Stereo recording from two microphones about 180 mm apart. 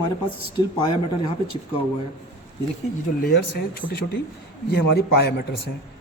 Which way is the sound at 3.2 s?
60° left (ahead or behind).